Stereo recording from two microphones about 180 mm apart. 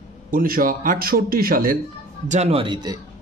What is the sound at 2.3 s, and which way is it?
Speech, 35° right (ahead or behind).